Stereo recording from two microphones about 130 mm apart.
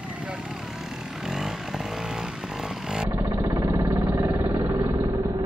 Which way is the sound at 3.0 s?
20° right (ahead or behind).